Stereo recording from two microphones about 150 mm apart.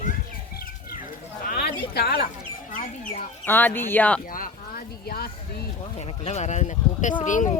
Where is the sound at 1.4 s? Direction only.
80° left.